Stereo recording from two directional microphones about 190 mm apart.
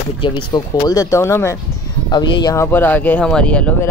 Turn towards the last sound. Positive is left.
turn(degrees=5)  # may be behind; listen again after turning